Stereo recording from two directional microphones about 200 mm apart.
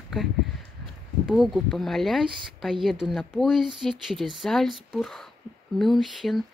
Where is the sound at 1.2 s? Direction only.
Centre (ahead or behind).